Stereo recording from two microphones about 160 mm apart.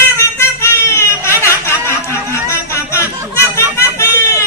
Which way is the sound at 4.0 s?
20° left (ahead or behind).